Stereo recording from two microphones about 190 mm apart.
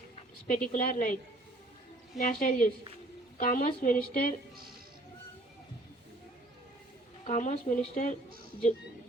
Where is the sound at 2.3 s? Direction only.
50° left (ahead or behind).